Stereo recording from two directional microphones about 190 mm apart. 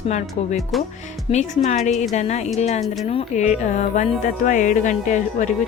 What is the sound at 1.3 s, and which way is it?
Speech, 35° left (ahead or behind).